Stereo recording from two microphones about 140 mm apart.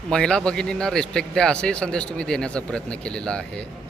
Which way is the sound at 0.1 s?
5° left (ahead or behind).